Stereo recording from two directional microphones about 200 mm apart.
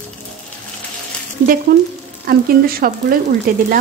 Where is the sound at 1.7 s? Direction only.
50° right (ahead or behind).